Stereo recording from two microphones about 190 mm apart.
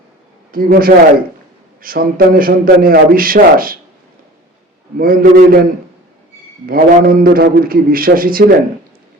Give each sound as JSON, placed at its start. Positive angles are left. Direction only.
{"t": 0.5, "sound": "a man's voice", "side_deg": -50}
{"t": 4.9, "sound": "a man's voice", "side_deg": -50}
{"t": 6.7, "sound": "a man's voice", "side_deg": -50}